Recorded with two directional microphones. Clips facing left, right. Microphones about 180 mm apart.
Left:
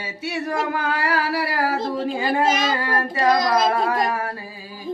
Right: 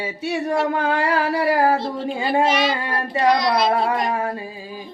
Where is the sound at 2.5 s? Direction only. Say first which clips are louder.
Even; 45° left (ahead or behind).